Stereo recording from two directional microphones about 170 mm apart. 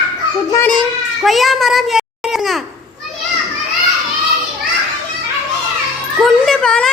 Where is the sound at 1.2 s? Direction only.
Centre (ahead or behind).